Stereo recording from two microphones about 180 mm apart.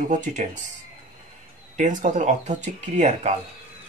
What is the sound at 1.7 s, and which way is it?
Speech, 45° right (ahead or behind).